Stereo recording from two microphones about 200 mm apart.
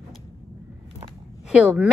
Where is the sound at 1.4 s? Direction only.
5° right (ahead or behind).